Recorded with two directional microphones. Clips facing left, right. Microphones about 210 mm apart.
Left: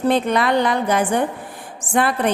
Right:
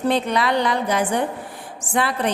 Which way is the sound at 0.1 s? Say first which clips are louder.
Left 3 dB; 50° left (ahead or behind).